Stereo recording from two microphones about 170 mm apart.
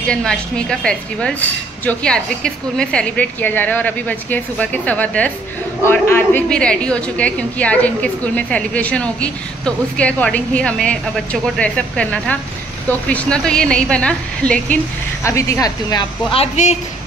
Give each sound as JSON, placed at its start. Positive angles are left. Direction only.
{"t": 0.1, "sound": "a woman's voice", "side_deg": 5}
{"t": 15.2, "sound": "speech", "side_deg": 15}
{"t": 16.3, "sound": "speech", "side_deg": 45}